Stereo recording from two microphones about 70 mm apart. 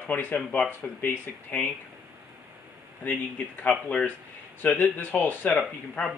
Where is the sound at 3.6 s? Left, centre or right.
Centre.